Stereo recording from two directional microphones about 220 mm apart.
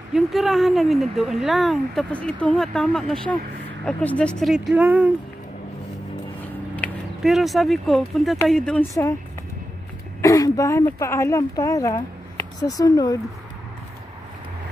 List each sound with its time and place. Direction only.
0.1 s speech: centre (ahead or behind)
6.4 s speech: 5° left (ahead or behind)
10.2 s speech: 15° left (ahead or behind)